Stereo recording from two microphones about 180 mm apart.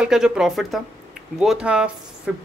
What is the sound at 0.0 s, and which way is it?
Speech, 5° right (ahead or behind).